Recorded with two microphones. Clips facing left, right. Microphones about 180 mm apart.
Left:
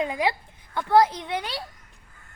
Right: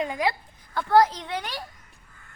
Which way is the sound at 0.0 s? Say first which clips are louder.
Left 1 dB; 20° left (ahead or behind).